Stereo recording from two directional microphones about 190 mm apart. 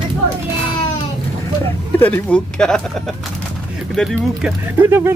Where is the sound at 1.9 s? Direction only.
10° left (ahead or behind); by 5.1 s 10° right (ahead or behind).